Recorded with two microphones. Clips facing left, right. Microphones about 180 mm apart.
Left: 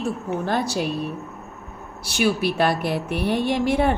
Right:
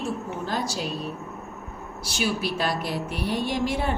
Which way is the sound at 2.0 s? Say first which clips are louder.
Left 6 dB; 60° left (ahead or behind).